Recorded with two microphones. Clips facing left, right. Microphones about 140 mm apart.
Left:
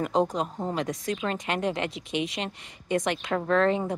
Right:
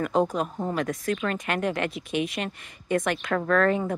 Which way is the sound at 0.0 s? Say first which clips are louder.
Right 1 dB; 20° left (ahead or behind).